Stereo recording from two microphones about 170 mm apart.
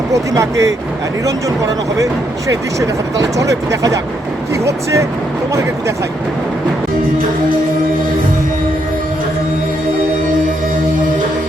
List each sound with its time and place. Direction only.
0.1 s speech: 20° right (ahead or behind)